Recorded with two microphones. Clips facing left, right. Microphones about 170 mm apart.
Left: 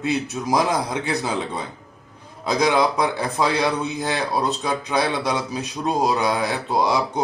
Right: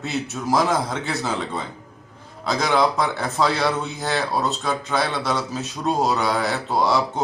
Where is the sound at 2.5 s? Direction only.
15° left (ahead or behind).